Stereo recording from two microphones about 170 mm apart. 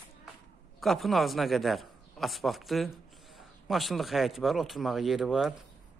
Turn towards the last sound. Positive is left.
turn(degrees=0)  # may be behind; listen again after turning